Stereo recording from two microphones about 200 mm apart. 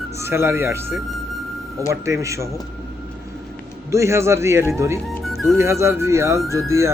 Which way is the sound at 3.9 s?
15° right (ahead or behind).